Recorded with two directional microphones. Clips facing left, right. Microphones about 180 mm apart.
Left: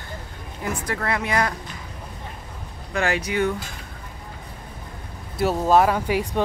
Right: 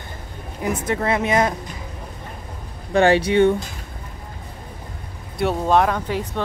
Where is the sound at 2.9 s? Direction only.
30° right (ahead or behind).